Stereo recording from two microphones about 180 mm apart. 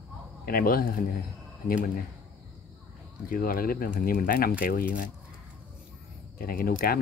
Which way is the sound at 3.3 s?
55° left (ahead or behind).